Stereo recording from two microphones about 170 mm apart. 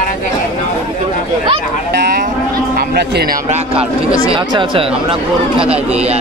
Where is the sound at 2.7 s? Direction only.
75° right (ahead or behind).